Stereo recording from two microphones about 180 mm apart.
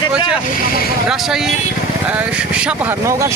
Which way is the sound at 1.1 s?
5° right (ahead or behind).